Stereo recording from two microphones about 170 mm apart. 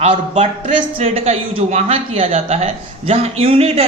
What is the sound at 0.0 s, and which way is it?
A man's voice, 40° right (ahead or behind).